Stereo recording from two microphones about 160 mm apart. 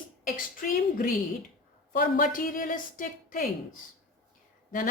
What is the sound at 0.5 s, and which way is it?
A woman's voice, 60° left (ahead or behind).